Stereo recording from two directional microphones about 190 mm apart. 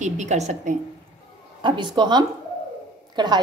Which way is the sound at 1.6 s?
25° right (ahead or behind).